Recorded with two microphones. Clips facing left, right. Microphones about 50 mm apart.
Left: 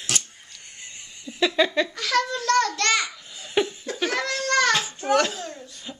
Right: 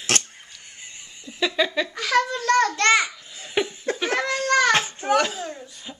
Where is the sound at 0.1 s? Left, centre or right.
Right.